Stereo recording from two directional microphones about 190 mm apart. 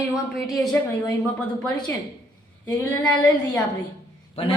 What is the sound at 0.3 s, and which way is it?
Speech, centre (ahead or behind).